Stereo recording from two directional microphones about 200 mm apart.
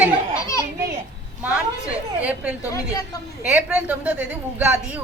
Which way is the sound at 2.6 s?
15° left (ahead or behind).